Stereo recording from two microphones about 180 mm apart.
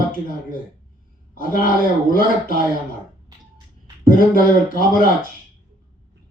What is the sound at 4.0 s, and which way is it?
Speech, 50° left (ahead or behind).